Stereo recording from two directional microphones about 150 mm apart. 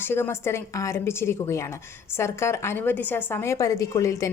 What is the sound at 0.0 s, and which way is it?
A woman's voice, 15° left (ahead or behind).